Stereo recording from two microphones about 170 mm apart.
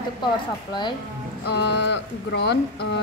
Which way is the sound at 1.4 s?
85° left.